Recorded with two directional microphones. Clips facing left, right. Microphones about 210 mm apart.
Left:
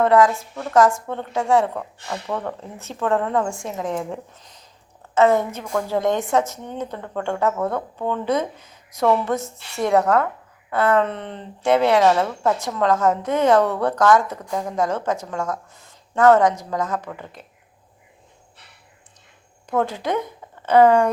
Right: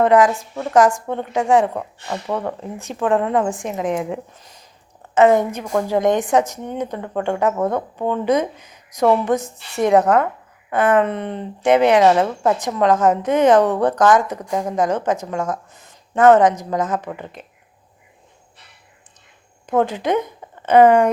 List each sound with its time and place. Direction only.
0.0 s a woman's voice: 15° right (ahead or behind)
19.6 s speech: 20° right (ahead or behind)